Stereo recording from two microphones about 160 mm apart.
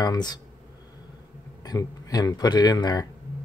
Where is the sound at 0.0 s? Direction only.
25° left (ahead or behind).